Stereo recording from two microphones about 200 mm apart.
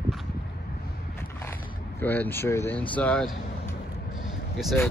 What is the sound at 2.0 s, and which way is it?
Speech, 10° left (ahead or behind).